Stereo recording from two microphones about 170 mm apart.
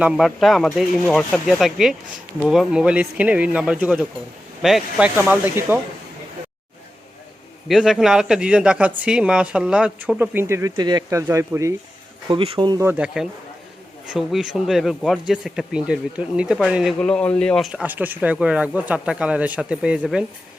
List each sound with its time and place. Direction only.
0.0 s speech: 5° right (ahead or behind)
7.7 s speech: 5° right (ahead or behind)
12.3 s speech: 30° right (ahead or behind)
12.9 s speech: 5° right (ahead or behind)
17.7 s speech: 10° right (ahead or behind)